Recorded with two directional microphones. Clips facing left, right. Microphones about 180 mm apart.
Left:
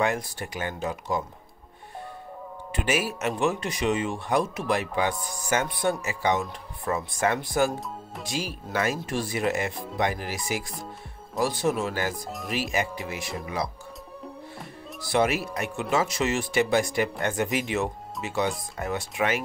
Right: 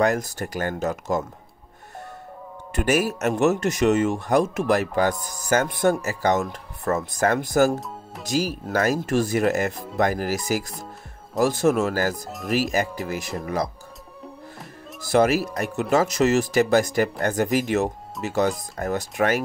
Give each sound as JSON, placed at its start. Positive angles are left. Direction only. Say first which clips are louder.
{"t": 0.0, "sound": "speech", "louder": "right 5 dB", "side_deg": -40}
{"t": 2.7, "sound": "speech", "louder": "right 5 dB", "side_deg": -45}
{"t": 7.8, "sound": "music", "louder": "even", "side_deg": 0}
{"t": 8.3, "sound": "speech", "louder": "right 8 dB", "side_deg": -40}
{"t": 15.0, "sound": "speech", "louder": "right 5 dB", "side_deg": -40}